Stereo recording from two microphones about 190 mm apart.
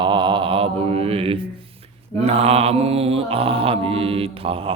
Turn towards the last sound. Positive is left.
turn(degrees=-30)  # may be behind; listen again after turning